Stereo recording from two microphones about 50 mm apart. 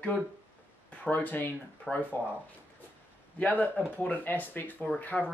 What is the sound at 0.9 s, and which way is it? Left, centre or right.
Speech, left.